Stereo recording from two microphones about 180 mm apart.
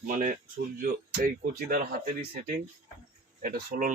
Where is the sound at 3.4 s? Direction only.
55° right (ahead or behind).